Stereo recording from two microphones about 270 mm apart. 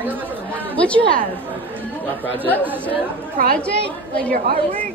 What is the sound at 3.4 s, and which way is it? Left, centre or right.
A woman's voice, right.